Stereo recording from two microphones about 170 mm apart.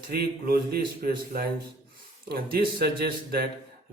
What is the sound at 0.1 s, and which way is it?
Speech, 70° right (ahead or behind).